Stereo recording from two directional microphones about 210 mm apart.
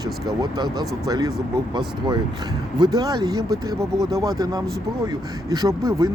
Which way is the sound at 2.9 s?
20° right (ahead or behind).